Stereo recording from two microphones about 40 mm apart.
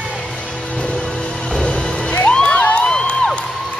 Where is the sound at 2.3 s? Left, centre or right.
Left.